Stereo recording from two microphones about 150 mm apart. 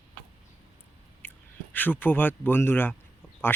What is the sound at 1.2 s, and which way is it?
Whispering, 15° left (ahead or behind).